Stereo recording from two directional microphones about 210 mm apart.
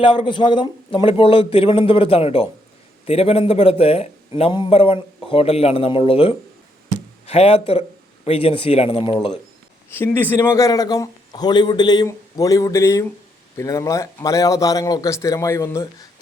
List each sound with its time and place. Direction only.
0.0 s a man's voice: 20° left (ahead or behind)
9.9 s a man's voice: 10° left (ahead or behind)